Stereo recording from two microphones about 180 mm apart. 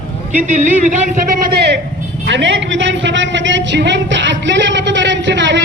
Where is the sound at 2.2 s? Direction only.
90° right.